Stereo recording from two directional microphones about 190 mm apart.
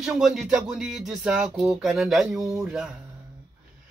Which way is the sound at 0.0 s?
Centre (ahead or behind).